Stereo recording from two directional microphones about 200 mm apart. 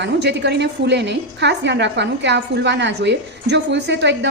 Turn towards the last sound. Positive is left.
turn(degrees=-60)  # may be behind; listen again after turning